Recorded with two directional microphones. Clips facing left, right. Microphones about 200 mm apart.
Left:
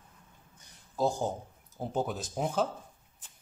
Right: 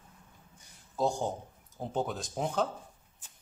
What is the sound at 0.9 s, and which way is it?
Speech, centre (ahead or behind).